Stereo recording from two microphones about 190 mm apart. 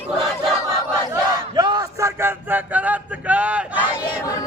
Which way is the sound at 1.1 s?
20° right (ahead or behind).